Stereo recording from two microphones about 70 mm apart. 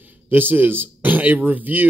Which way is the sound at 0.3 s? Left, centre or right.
Right.